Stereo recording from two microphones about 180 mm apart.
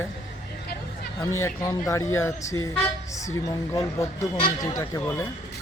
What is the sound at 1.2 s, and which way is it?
A man's voice, 15° left (ahead or behind).